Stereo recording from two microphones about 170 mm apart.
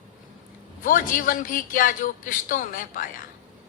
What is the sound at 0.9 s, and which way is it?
Speech, 55° left (ahead or behind).